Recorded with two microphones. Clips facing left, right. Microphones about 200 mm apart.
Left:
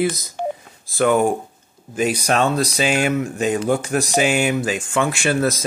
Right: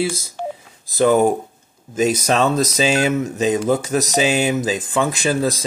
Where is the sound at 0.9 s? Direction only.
40° right (ahead or behind).